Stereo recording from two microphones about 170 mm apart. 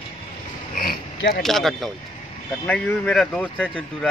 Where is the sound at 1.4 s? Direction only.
Centre (ahead or behind).